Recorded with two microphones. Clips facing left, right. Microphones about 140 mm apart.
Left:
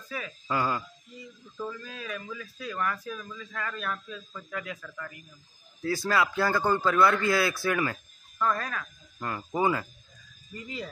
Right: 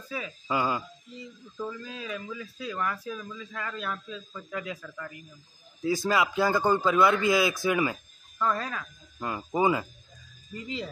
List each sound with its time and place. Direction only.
0.1 s a man's voice: 15° right (ahead or behind)